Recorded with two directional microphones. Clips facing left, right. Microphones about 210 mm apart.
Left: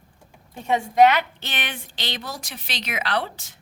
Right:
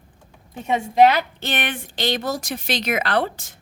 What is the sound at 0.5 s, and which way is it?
Speech, 20° right (ahead or behind).